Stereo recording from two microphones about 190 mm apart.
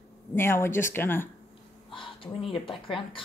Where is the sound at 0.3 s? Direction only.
10° left (ahead or behind).